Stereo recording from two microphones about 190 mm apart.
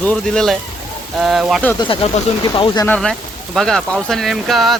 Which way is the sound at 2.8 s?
5° left (ahead or behind).